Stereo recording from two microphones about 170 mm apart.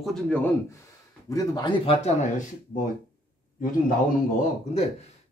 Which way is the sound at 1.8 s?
35° left (ahead or behind).